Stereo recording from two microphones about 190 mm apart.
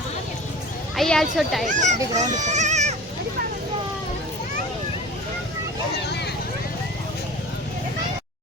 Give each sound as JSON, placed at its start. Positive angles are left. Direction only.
{"t": 0.9, "sound": "speech", "side_deg": 0}
{"t": 1.6, "sound": "speech", "side_deg": -40}
{"t": 5.9, "sound": "vehicle", "side_deg": 60}